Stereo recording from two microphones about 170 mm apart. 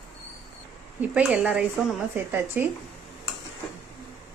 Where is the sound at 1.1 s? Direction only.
5° right (ahead or behind).